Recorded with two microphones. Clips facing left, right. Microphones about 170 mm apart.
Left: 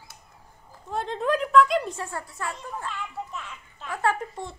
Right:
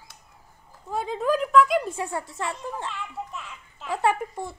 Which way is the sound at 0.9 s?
5° right (ahead or behind).